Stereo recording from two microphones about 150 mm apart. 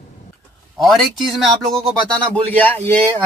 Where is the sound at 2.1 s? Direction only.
10° left (ahead or behind).